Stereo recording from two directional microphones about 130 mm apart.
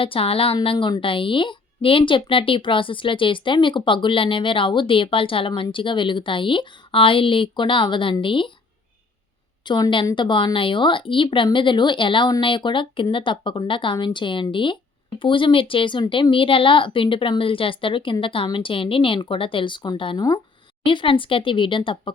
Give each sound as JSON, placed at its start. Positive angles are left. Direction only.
{"t": 0.0, "sound": "a woman's voice", "side_deg": 45}
{"t": 9.6, "sound": "a woman's voice", "side_deg": 35}